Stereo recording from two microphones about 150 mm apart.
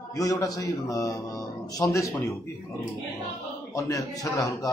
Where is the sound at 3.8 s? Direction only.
20° left (ahead or behind).